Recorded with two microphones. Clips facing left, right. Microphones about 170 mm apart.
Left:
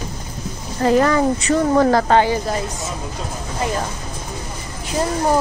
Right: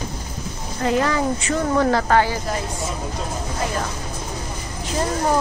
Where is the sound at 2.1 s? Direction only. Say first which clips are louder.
Left 3 dB; 20° left (ahead or behind).